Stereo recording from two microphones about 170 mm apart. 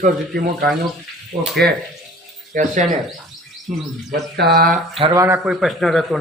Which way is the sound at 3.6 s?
Centre (ahead or behind).